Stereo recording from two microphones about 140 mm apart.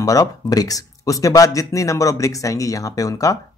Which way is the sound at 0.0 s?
25° left (ahead or behind).